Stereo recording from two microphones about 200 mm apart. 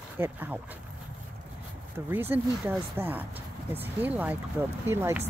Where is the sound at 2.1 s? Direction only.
10° right (ahead or behind).